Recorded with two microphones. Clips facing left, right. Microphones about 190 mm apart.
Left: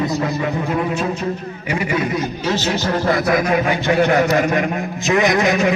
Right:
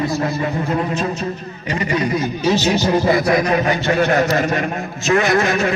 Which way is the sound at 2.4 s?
15° right (ahead or behind).